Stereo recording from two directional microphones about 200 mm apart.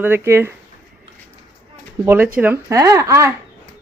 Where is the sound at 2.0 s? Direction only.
10° right (ahead or behind).